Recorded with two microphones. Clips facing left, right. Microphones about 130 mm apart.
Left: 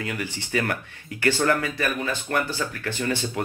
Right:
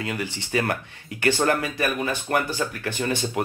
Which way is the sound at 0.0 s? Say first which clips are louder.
Right 1 dB; 20° right (ahead or behind).